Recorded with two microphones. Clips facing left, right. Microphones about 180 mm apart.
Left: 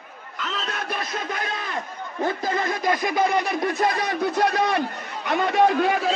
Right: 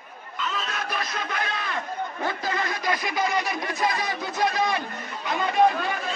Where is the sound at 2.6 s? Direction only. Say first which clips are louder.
Left 4 dB; 50° left (ahead or behind).